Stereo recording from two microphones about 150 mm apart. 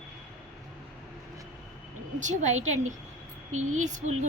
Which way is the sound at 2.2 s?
50° right (ahead or behind).